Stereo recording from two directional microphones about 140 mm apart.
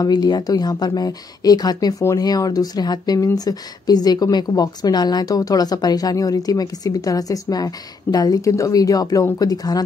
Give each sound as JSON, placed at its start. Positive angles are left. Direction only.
{"t": 0.0, "sound": "speech", "side_deg": 30}